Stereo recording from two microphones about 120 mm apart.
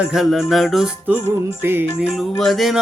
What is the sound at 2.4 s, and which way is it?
Speech, centre (ahead or behind).